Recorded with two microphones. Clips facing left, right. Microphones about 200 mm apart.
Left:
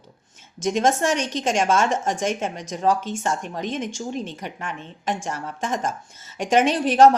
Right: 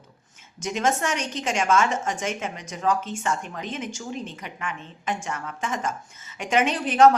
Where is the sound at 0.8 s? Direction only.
35° left (ahead or behind).